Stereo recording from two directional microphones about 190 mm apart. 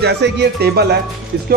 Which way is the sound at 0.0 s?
60° right (ahead or behind).